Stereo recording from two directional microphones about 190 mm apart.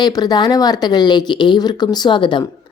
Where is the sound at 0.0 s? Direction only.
20° left (ahead or behind).